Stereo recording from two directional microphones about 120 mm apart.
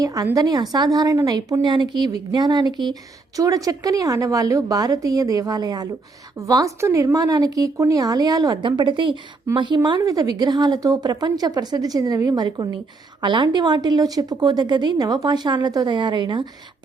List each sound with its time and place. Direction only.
0.0 s a woman's voice: 30° right (ahead or behind)